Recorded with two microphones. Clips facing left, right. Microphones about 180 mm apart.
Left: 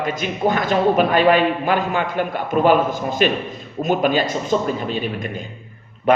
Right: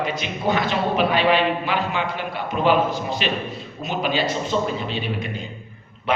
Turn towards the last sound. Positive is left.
turn(degrees=45)  # may be behind; listen again after turning